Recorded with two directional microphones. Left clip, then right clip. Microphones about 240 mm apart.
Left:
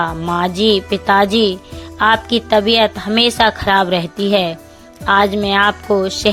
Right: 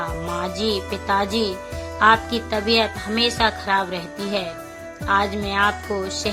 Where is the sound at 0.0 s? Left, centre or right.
Left.